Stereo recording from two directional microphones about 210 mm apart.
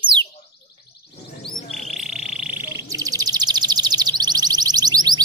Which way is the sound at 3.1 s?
15° right (ahead or behind).